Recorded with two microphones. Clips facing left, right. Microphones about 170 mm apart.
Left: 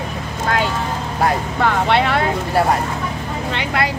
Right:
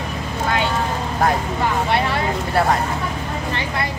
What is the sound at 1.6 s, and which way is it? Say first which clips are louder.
Vehicle: left 4 dB; 70° left (ahead or behind).